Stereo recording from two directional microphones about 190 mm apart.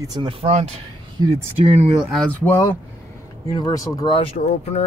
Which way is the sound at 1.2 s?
15° right (ahead or behind).